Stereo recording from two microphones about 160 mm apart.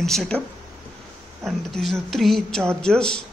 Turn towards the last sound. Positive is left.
turn(degrees=5)  # may be behind; listen again after turning